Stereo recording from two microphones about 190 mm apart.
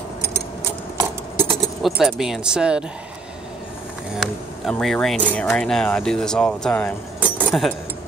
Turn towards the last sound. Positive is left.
turn(degrees=-5)  # may be behind; listen again after turning